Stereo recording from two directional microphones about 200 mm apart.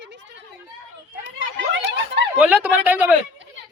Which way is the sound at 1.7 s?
65° right (ahead or behind).